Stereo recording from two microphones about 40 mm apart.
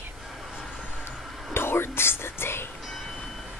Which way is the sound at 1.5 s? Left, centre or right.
Left.